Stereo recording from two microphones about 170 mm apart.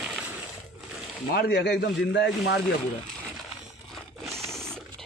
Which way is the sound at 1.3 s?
70° left (ahead or behind).